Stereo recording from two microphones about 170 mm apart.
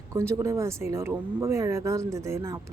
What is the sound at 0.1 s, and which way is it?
Speech, 15° right (ahead or behind).